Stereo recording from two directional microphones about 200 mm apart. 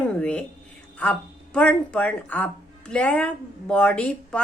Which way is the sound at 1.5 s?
5° left (ahead or behind).